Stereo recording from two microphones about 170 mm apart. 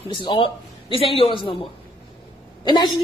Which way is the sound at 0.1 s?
30° left (ahead or behind).